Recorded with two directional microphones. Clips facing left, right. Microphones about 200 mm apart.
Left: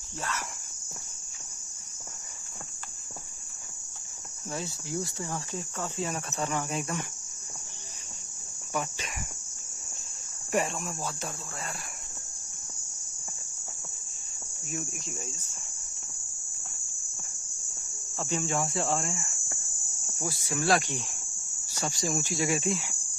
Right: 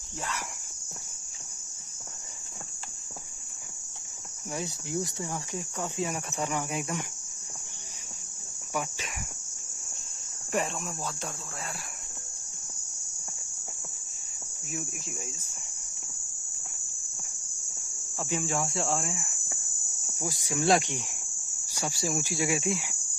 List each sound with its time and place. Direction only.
4.5 s speech: 15° right (ahead or behind)
10.5 s speech: 5° left (ahead or behind)
14.7 s speech: 10° right (ahead or behind)
18.1 s cricket: 10° right (ahead or behind)
20.2 s speech: 15° right (ahead or behind)
21.6 s cricket: 10° right (ahead or behind)